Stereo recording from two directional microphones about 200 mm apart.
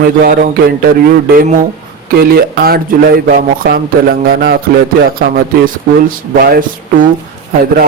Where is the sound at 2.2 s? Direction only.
50° right (ahead or behind).